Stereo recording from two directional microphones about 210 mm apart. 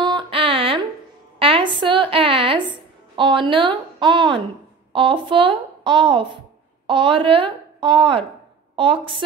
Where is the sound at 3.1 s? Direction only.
25° right (ahead or behind).